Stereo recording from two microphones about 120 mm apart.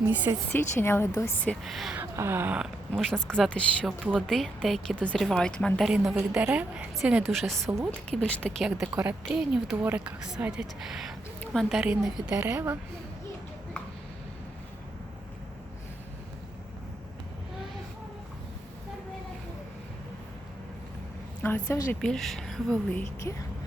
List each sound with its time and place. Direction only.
0.0 s a woman's voice: 20° right (ahead or behind)
0.5 s speech: 20° left (ahead or behind)
1.6 s speech: centre (ahead or behind)
2.0 s speech: 20° right (ahead or behind)
2.9 s speech: 5° left (ahead or behind)
6.1 s speech: 5° right (ahead or behind); by 8.6 s 10° left (ahead or behind)
8.8 s speech: 15° right (ahead or behind)
21.4 s speech: 15° left (ahead or behind)
22.0 s speech: centre (ahead or behind)
23.3 s speech: 20° left (ahead or behind)